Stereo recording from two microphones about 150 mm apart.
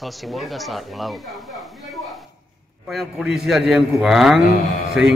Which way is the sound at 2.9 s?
Centre (ahead or behind).